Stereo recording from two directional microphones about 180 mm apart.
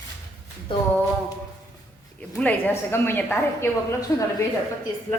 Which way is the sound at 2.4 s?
10° left (ahead or behind).